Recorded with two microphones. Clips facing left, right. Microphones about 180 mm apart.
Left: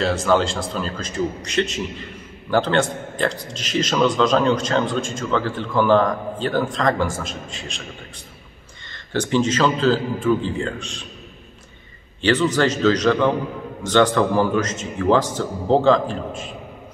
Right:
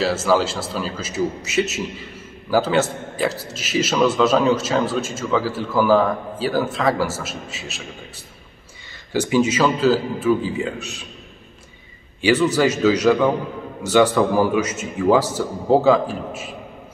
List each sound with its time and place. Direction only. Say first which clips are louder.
0.0 s a man's voice: even; 5° right (ahead or behind)
8.9 s a man's voice: right 2 dB; 10° right (ahead or behind)
12.2 s a man's voice: right 1 dB; 10° right (ahead or behind)